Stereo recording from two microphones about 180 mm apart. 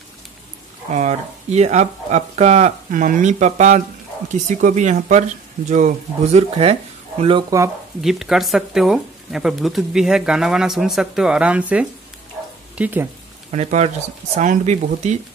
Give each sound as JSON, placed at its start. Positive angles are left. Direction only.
{"t": 0.9, "sound": "speech", "side_deg": -40}
{"t": 8.0, "sound": "speech", "side_deg": 0}
{"t": 13.5, "sound": "speech", "side_deg": -40}